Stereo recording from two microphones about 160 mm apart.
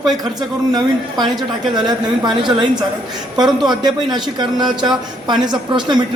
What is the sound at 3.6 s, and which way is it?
A man's voice, 25° right (ahead or behind).